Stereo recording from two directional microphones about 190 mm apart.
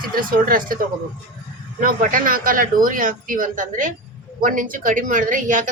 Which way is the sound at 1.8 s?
45° right (ahead or behind).